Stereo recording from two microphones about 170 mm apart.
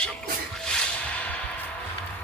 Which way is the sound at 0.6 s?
5° left (ahead or behind).